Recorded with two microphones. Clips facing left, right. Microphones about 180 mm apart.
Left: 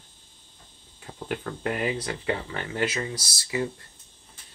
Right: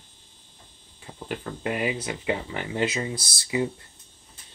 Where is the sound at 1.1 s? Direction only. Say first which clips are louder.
Left 1 dB; 5° right (ahead or behind); by 3.7 s 20° right (ahead or behind).